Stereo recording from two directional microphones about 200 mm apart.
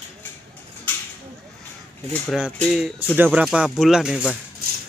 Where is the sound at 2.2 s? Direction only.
Centre (ahead or behind).